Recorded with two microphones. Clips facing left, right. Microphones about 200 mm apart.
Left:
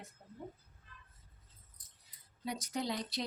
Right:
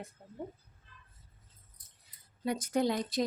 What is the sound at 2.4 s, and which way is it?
Speech, 55° right (ahead or behind).